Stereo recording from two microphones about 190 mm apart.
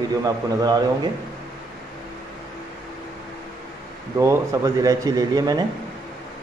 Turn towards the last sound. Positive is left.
turn(degrees=-20)  # may be behind; listen again after turning